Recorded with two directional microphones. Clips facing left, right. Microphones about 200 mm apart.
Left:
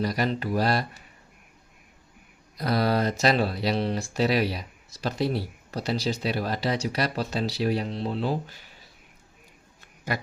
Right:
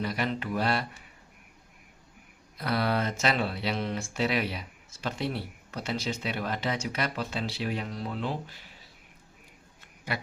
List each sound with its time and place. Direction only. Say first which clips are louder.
0.0 s speech: left 4 dB; 40° left (ahead or behind)
2.6 s speech: left 4 dB; 40° left (ahead or behind)